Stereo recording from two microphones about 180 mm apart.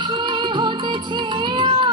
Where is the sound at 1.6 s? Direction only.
25° right (ahead or behind).